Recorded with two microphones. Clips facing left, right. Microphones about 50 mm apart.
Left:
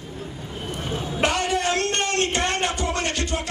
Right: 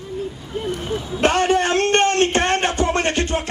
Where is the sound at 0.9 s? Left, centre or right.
Left.